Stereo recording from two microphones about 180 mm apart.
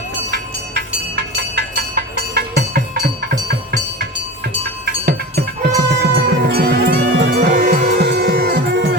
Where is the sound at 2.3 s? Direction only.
60° right (ahead or behind).